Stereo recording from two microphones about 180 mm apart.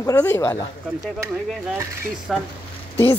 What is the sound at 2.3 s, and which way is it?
Speech, centre (ahead or behind).